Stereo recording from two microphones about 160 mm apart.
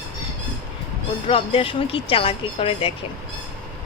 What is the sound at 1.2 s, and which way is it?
Speech, 35° left (ahead or behind).